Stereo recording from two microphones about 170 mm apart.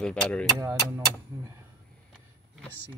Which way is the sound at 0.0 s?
5° left (ahead or behind).